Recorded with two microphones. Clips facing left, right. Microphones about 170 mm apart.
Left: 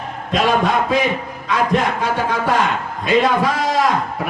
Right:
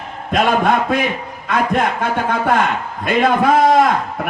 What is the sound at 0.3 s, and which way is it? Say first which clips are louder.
A man's voice: right 2 dB; 55° right (ahead or behind).